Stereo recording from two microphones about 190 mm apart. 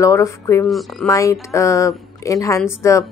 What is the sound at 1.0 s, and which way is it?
A woman's voice, 15° left (ahead or behind).